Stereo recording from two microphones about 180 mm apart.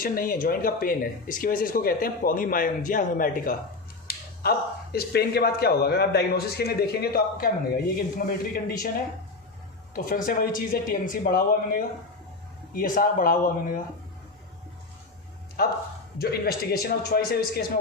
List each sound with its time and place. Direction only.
0.0 s speech: 50° left (ahead or behind)
9.9 s speech: 50° left (ahead or behind)
15.6 s speech: 60° left (ahead or behind)